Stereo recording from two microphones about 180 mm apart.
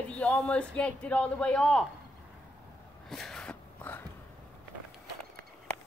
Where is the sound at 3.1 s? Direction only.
5° left (ahead or behind).